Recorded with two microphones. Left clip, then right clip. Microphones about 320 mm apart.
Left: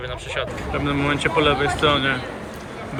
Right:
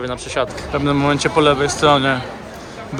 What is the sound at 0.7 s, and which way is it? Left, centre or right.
Speech, centre.